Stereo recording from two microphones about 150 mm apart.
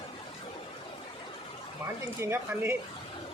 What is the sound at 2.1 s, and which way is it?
Speech, 15° right (ahead or behind).